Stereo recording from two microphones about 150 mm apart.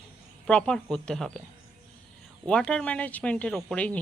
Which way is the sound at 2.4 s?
5° left (ahead or behind).